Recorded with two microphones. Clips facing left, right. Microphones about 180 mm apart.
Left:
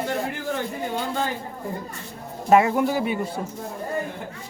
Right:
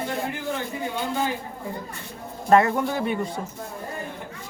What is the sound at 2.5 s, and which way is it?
Speech, 10° left (ahead or behind).